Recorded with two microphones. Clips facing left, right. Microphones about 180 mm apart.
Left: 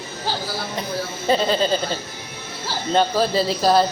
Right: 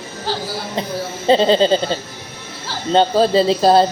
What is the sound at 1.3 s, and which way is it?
Speech, 25° right (ahead or behind).